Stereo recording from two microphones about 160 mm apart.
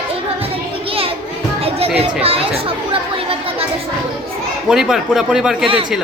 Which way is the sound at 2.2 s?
35° right (ahead or behind).